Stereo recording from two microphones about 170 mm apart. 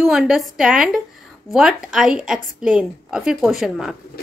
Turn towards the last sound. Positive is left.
turn(degrees=0)  # may be behind; listen again after turning